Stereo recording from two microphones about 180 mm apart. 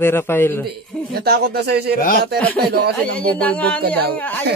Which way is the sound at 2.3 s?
5° left (ahead or behind).